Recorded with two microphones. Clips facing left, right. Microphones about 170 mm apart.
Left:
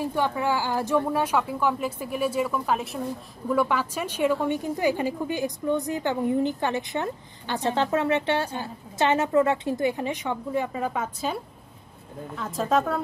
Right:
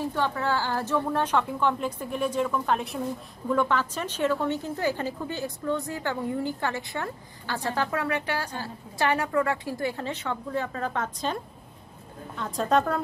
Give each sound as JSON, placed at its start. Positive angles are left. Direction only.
{"t": 0.0, "sound": "a woman's voice", "side_deg": 15}